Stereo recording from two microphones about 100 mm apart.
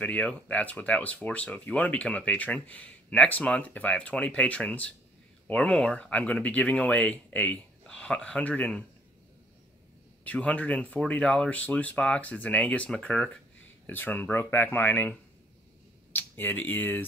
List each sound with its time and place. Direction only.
0.0 s speech: 10° left (ahead or behind)
10.2 s speech: 15° left (ahead or behind)